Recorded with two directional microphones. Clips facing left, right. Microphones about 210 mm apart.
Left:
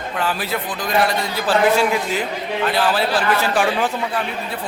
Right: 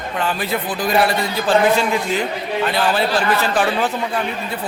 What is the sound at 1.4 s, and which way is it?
A man's voice, 5° left (ahead or behind).